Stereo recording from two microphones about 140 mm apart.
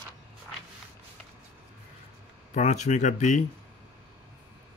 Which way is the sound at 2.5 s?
55° left (ahead or behind).